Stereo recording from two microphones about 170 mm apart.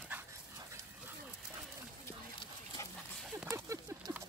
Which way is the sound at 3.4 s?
15° right (ahead or behind).